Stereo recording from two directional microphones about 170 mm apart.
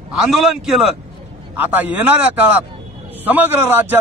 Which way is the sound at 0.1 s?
Centre (ahead or behind).